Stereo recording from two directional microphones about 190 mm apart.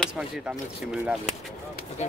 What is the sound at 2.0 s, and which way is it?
Speech, 35° left (ahead or behind).